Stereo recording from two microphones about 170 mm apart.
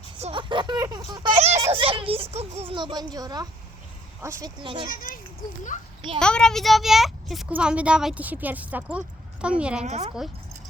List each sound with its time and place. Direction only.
0.2 s a sound: 30° right (ahead or behind)
1.4 s a sound: 40° right (ahead or behind)
2.3 s speech: 40° right (ahead or behind)
4.9 s children playing: 55° left (ahead or behind)
6.1 s a child's voice: 5° left (ahead or behind)
9.8 s a woman's voice: 40° right (ahead or behind)